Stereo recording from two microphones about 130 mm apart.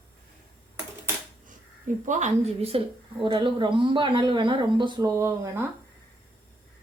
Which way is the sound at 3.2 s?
40° right (ahead or behind).